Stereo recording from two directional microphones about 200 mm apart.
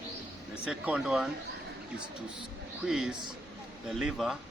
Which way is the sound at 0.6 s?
5° right (ahead or behind).